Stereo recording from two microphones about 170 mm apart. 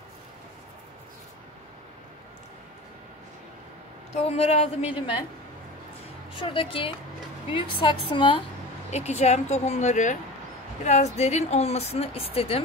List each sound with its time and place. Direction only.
4.1 s speech: 40° left (ahead or behind)
6.3 s a woman's voice: 30° left (ahead or behind)
8.9 s speech: 40° left (ahead or behind)